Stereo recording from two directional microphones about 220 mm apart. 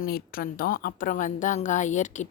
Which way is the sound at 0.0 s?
40° left (ahead or behind).